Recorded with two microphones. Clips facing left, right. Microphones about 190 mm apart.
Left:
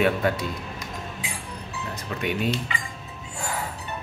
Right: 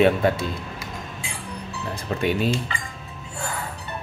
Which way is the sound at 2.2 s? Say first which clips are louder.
Right 4 dB; 30° right (ahead or behind).